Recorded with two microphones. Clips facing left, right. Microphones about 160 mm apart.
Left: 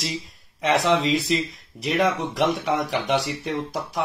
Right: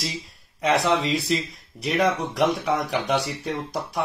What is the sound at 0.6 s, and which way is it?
Speech, centre (ahead or behind).